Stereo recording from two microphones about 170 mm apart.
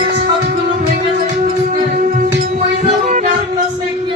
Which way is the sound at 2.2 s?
50° right (ahead or behind).